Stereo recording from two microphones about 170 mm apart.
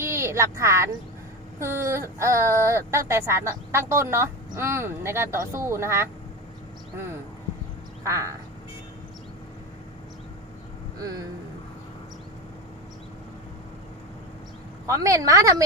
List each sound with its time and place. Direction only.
0.0 s speech: 15° right (ahead or behind)
8.0 s speech: 20° right (ahead or behind)
14.8 s a woman's voice: 20° right (ahead or behind)